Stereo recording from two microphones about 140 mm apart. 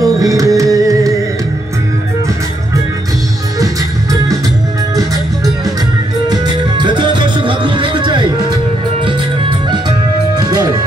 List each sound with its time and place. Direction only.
0.0 s music: 25° right (ahead or behind)
3.5 s music: 25° right (ahead or behind)
6.2 s music: 30° right (ahead or behind)